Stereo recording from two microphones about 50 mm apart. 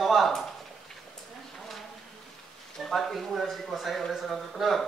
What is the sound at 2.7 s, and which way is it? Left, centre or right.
A woman's voice, centre.